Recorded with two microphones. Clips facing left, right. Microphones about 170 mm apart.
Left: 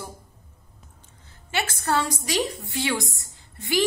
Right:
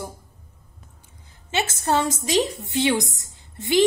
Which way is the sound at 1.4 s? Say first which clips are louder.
Right 3 dB; 20° right (ahead or behind).